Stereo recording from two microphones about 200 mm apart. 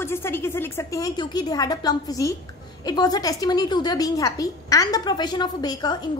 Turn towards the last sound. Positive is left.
turn(degrees=20)  # may be behind; listen again after turning